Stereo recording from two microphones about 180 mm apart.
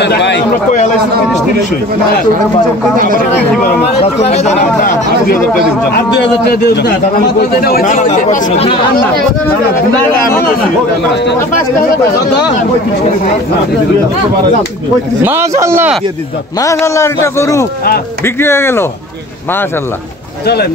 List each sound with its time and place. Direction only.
0.0 s a man's voice: 75° left (ahead or behind)
4.0 s speech: 35° left (ahead or behind)
6.1 s a man's voice: 70° left (ahead or behind)
7.6 s speech: 50° left (ahead or behind)
15.2 s a man's voice: 15° right (ahead or behind)
16.5 s a man's voice: 15° left (ahead or behind)